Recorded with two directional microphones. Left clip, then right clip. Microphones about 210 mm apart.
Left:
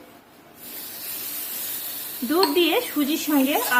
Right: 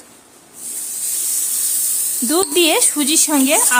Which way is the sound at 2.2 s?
50° right (ahead or behind).